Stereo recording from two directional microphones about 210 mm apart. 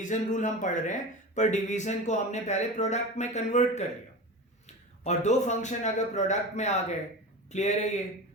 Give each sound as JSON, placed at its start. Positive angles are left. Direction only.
{"t": 0.0, "sound": "a man's voice", "side_deg": 35}
{"t": 5.0, "sound": "a man's voice", "side_deg": 35}